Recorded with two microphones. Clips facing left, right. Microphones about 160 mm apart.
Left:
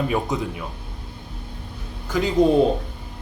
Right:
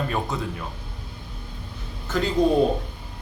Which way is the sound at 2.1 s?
10° left (ahead or behind).